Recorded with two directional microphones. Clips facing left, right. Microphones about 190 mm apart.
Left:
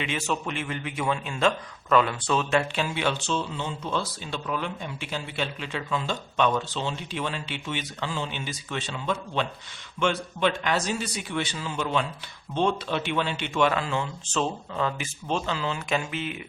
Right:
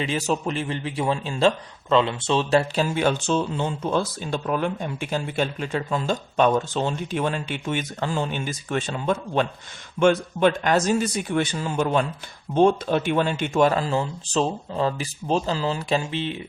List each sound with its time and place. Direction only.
0.0 s a man's voice: 35° right (ahead or behind)